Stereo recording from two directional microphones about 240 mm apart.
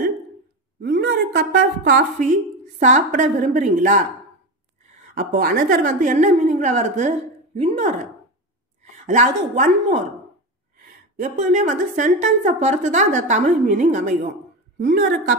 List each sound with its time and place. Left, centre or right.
0.7 s a woman's voice: right
11.1 s a woman's voice: right